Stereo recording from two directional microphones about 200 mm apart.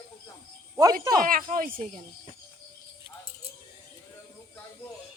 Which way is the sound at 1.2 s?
45° right (ahead or behind).